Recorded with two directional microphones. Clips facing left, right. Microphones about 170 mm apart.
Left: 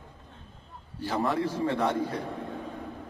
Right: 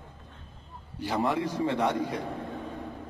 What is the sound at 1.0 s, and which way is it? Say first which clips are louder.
Speech: even; 15° right (ahead or behind).